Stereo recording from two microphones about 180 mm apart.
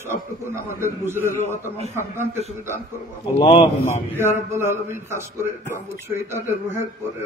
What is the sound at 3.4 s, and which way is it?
Speech, 25° left (ahead or behind).